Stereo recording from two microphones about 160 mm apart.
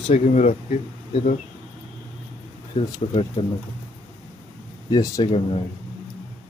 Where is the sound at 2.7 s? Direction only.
35° left (ahead or behind).